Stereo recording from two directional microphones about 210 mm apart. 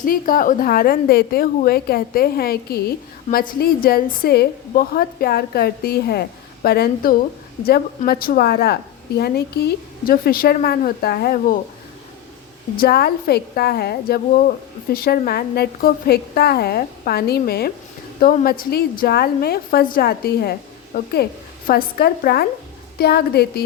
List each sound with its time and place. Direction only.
0.0 s a woman's voice: 40° left (ahead or behind)
12.7 s a woman's voice: 45° left (ahead or behind)